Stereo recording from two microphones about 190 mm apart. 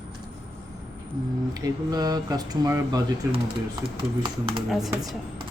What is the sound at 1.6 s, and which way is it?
Speech, 20° right (ahead or behind).